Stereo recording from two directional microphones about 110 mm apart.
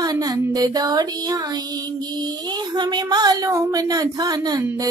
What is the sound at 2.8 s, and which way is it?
Speech, 40° right (ahead or behind).